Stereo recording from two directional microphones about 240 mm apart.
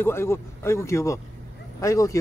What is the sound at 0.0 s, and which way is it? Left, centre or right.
Speech, centre.